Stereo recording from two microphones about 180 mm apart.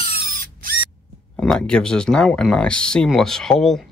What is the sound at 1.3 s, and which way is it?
Speech, 5° left (ahead or behind).